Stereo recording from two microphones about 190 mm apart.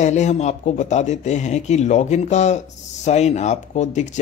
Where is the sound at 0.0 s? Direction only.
40° left (ahead or behind).